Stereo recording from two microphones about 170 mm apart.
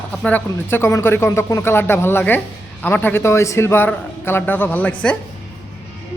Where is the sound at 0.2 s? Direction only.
10° left (ahead or behind).